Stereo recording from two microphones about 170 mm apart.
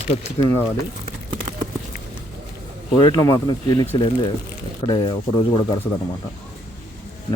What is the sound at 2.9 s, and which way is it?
Speech, 25° left (ahead or behind).